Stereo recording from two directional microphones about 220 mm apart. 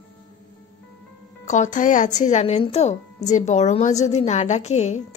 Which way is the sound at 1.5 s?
35° left (ahead or behind).